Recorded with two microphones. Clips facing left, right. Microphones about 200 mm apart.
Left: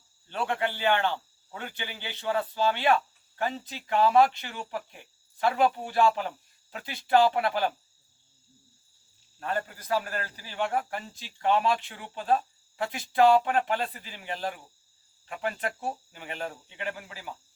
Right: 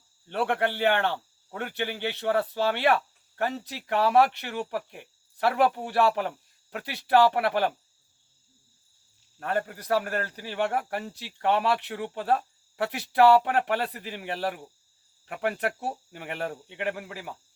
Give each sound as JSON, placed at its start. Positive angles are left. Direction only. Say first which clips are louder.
{"t": 0.3, "sound": "speech", "louder": "right 3 dB", "side_deg": -60}
{"t": 9.4, "sound": "speech", "louder": "right 3 dB", "side_deg": -60}